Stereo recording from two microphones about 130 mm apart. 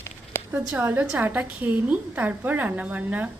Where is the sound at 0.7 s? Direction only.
15° right (ahead or behind).